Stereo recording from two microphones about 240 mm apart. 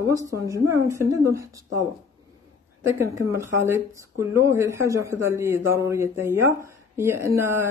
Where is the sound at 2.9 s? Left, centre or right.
Centre.